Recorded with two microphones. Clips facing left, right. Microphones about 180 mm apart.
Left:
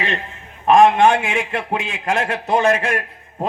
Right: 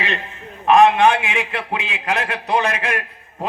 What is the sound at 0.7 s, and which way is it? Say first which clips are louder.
A man's voice: left 1 dB; 45° left (ahead or behind).